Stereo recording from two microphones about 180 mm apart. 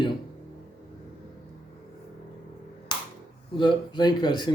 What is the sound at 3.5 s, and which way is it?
Speech, 25° left (ahead or behind).